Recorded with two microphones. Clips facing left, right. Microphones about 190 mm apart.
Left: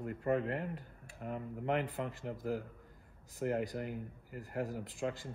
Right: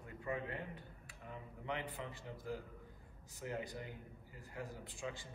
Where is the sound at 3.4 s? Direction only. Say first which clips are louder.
Left 9 dB; 55° left (ahead or behind).